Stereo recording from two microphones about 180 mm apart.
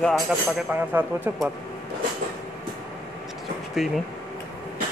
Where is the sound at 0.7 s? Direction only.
10° right (ahead or behind).